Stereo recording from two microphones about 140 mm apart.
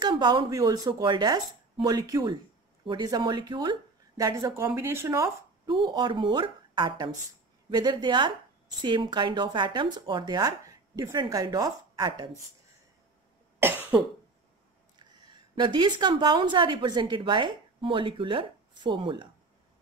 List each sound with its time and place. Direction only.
0.0 s a woman's voice: 30° right (ahead or behind)
5.7 s a woman's voice: 35° right (ahead or behind)
13.6 s cough: 15° right (ahead or behind)
15.5 s a woman's voice: 30° right (ahead or behind)